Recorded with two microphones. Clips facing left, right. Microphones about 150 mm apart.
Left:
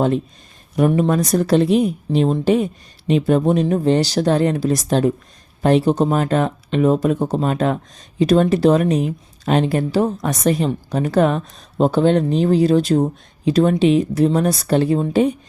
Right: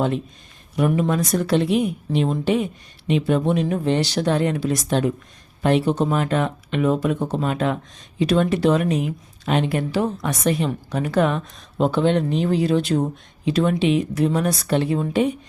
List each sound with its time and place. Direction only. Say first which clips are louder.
0.8 s speech: left 4 dB; 40° left (ahead or behind)